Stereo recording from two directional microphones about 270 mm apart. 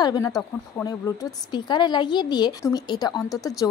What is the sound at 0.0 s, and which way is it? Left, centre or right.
A woman's voice, centre.